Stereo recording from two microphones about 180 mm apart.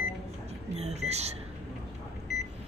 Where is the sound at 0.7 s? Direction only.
35° right (ahead or behind).